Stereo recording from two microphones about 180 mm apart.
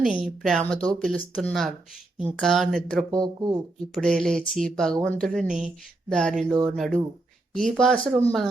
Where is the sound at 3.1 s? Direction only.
20° right (ahead or behind).